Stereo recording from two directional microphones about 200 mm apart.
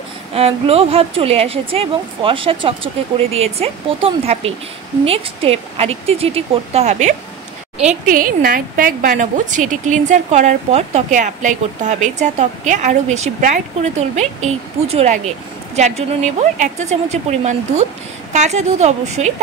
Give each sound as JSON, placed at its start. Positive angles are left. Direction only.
{"t": 0.3, "sound": "a woman's voice", "side_deg": -30}